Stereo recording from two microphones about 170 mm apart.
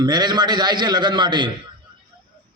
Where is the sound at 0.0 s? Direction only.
25° right (ahead or behind).